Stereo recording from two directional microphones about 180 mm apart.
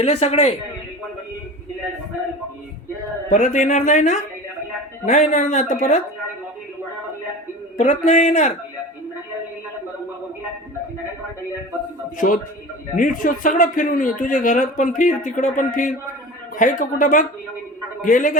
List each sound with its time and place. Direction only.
0.0 s speech: 35° left (ahead or behind)
3.2 s a man's voice: 45° left (ahead or behind)
7.8 s speech: 40° left (ahead or behind)
12.1 s a man's voice: 45° left (ahead or behind)